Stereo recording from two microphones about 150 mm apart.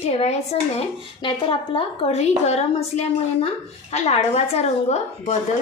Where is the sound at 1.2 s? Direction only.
35° left (ahead or behind).